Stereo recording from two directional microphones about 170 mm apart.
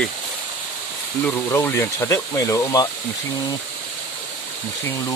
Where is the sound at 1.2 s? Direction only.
15° left (ahead or behind).